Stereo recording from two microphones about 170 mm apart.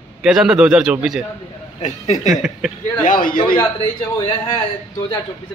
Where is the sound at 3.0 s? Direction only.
55° left (ahead or behind).